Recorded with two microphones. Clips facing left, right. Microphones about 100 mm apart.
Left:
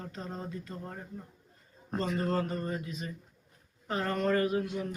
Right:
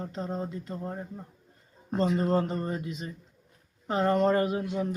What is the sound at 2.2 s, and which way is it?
Speech, 25° right (ahead or behind).